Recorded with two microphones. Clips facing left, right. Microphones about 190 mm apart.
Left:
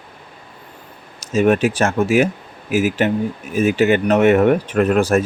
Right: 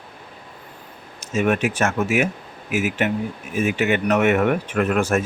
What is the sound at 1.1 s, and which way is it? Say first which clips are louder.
Speech: left 5 dB; 35° left (ahead or behind).